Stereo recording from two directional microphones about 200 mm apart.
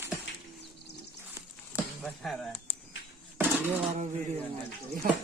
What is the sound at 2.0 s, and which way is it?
Speech, 5° left (ahead or behind).